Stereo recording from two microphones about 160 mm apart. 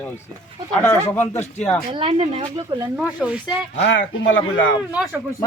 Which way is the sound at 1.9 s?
35° right (ahead or behind).